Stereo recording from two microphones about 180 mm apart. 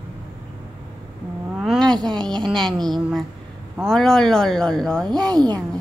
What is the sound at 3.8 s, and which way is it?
Speech, 5° left (ahead or behind).